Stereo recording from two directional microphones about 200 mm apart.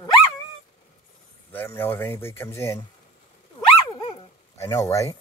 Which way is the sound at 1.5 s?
10° left (ahead or behind).